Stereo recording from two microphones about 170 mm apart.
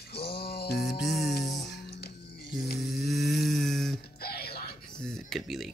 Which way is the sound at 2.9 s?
Centre (ahead or behind).